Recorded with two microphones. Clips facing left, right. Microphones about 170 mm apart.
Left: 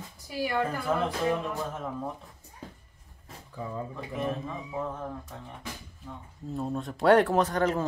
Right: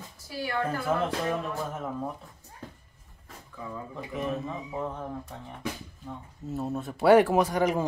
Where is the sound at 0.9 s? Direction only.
5° right (ahead or behind).